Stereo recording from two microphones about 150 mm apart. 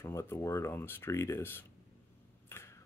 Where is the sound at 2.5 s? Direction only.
15° left (ahead or behind).